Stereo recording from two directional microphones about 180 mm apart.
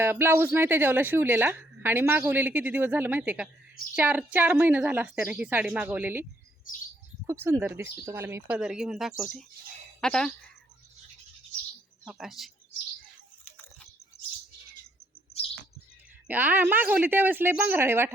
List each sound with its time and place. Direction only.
0.0 s a woman's voice: 10° right (ahead or behind)
6.7 s bird: 50° left (ahead or behind)
7.3 s a woman's voice: 15° right (ahead or behind); by 10.3 s 5° left (ahead or behind)
12.0 s speech: centre (ahead or behind)
16.2 s a woman's voice: 10° right (ahead or behind)